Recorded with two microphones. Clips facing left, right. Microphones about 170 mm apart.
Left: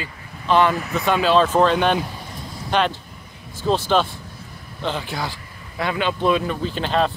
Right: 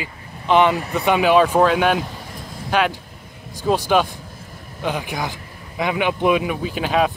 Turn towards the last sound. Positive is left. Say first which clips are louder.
# right 1 dB
turn(degrees=-10)  # may be behind; listen again after turning